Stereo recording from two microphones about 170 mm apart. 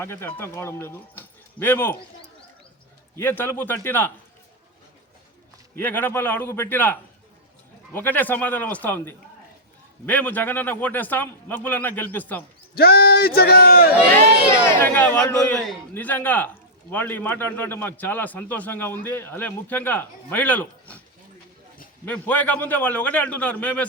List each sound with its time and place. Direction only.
0.0 s a man's voice: 15° left (ahead or behind)
3.2 s a man's voice: 10° left (ahead or behind)
5.7 s a man's voice: 10° left (ahead or behind)
12.7 s speech: 65° left (ahead or behind)
14.8 s a man's voice: 10° left (ahead or behind)
22.0 s a man's voice: 10° left (ahead or behind)